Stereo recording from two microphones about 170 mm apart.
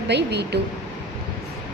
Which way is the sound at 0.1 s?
80° right.